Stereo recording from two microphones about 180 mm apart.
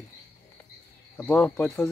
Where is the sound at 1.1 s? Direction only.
10° left (ahead or behind).